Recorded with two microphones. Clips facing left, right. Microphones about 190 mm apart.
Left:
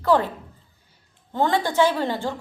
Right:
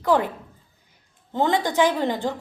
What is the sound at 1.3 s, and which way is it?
A woman's voice, 15° right (ahead or behind).